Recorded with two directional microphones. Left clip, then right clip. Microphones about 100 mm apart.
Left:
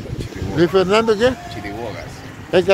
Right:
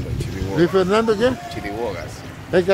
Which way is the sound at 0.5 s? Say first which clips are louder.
Left 2 dB; centre (ahead or behind).